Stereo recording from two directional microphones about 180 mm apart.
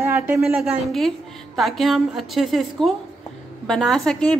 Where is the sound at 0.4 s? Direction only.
Centre (ahead or behind).